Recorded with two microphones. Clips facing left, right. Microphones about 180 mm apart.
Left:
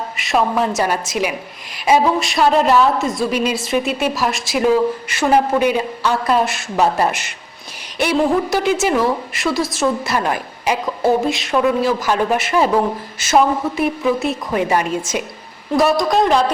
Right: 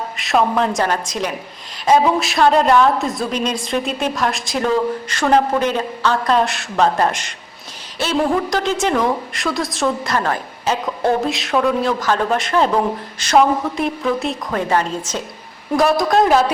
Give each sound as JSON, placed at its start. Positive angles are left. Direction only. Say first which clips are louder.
{"t": 0.2, "sound": "a woman's voice", "louder": "right 1 dB", "side_deg": 0}